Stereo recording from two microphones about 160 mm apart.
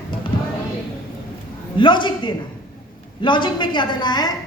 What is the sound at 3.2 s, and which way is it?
A woman's voice, 30° left (ahead or behind).